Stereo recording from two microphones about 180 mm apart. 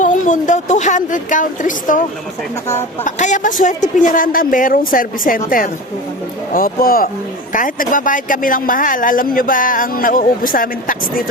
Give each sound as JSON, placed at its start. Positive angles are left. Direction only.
{"t": 0.0, "sound": "speech", "side_deg": 45}